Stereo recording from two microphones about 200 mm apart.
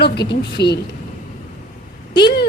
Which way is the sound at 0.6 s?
55° left (ahead or behind).